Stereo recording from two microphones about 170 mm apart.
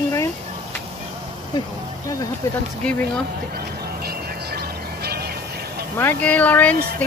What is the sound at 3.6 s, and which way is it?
Music, 65° right (ahead or behind).